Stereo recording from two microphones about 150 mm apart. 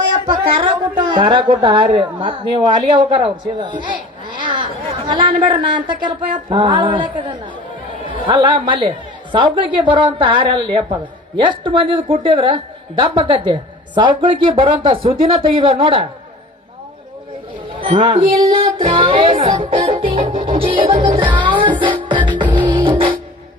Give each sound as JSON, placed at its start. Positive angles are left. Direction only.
{"t": 0.5, "sound": "a woman's voice", "side_deg": -35}
{"t": 4.4, "sound": "chatter", "side_deg": -30}
{"t": 5.0, "sound": "speech", "side_deg": -30}
{"t": 17.7, "sound": "speech", "side_deg": -35}